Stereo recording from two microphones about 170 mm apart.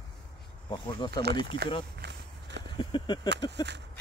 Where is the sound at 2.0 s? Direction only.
85° right.